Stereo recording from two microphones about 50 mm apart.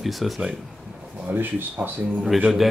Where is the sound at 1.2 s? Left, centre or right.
Right.